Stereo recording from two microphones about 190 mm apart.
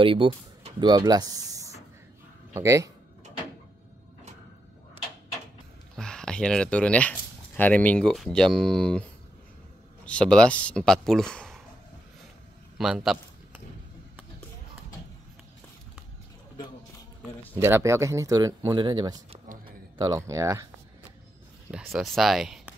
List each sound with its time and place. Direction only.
0.0 s speech: 25° right (ahead or behind)
5.9 s speech: 5° left (ahead or behind)
10.0 s speech: 5° left (ahead or behind)
12.7 s a sound: centre (ahead or behind)
17.6 s speech: 15° right (ahead or behind)
21.6 s speech: 5° right (ahead or behind)